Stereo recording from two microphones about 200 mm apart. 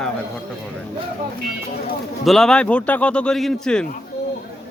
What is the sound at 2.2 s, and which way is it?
Speech, centre (ahead or behind).